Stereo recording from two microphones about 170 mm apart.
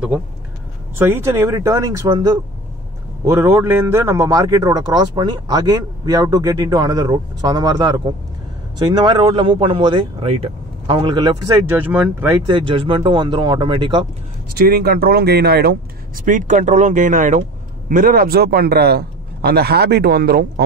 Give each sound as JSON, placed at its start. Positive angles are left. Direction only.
{"t": 0.9, "sound": "a man's voice", "side_deg": -15}
{"t": 11.7, "sound": "speech", "side_deg": -10}
{"t": 12.3, "sound": "a man's voice", "side_deg": -30}
{"t": 14.7, "sound": "a man's voice", "side_deg": -65}
{"t": 16.3, "sound": "a man's voice", "side_deg": -50}